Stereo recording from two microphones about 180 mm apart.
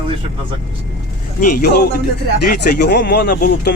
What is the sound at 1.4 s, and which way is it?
Speech, 50° left (ahead or behind).